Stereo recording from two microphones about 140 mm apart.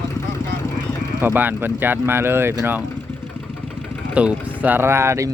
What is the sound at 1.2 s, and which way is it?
Speech, 15° right (ahead or behind).